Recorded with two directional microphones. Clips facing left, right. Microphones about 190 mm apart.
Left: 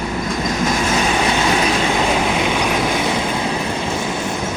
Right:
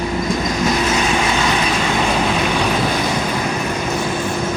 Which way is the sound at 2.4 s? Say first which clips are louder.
Even; 15° left (ahead or behind).